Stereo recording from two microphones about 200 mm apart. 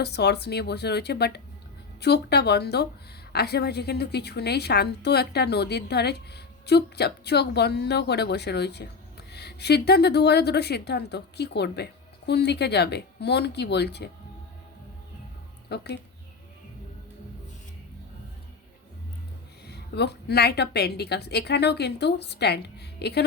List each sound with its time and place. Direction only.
0.0 s a woman's voice: 55° left (ahead or behind)
15.7 s a woman's voice: 55° left (ahead or behind)
19.6 s a woman's voice: 55° left (ahead or behind)